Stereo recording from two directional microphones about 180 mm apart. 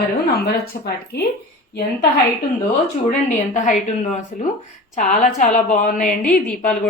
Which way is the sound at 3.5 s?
40° left (ahead or behind).